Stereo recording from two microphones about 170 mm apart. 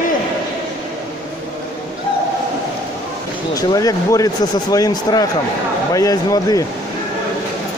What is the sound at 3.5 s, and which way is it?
Speech, 20° left (ahead or behind).